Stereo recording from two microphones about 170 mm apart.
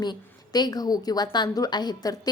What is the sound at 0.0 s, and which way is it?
A woman's voice, 25° left (ahead or behind).